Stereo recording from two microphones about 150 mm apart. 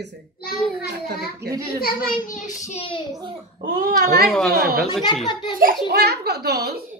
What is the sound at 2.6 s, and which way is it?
Speech, 40° left (ahead or behind).